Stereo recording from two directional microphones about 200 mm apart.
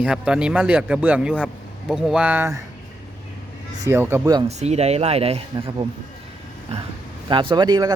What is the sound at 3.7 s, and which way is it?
Speech, 15° right (ahead or behind).